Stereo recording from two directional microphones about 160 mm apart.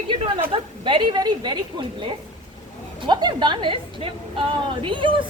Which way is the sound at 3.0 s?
30° right (ahead or behind).